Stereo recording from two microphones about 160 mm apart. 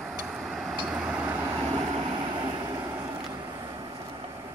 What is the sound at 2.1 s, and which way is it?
Vehicle, 30° right (ahead or behind).